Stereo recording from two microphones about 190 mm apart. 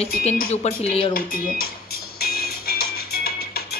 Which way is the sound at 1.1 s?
50° left (ahead or behind).